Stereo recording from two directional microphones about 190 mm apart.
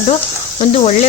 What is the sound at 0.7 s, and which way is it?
Speech, 35° left (ahead or behind).